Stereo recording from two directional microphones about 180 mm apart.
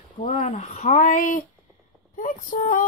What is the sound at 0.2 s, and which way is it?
Speech, 35° left (ahead or behind).